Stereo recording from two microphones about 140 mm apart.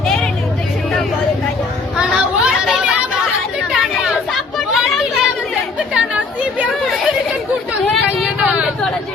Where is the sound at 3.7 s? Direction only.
Centre (ahead or behind).